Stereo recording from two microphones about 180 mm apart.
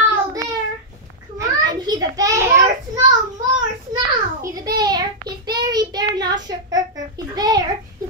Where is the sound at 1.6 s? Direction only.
20° right (ahead or behind).